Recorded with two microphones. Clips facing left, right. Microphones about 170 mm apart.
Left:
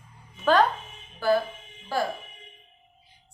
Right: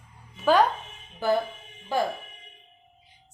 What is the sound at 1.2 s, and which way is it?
Speech, 20° right (ahead or behind).